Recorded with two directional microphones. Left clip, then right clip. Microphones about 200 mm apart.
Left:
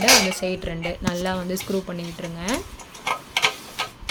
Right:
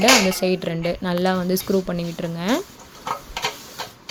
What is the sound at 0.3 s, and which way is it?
Speech, 35° right (ahead or behind).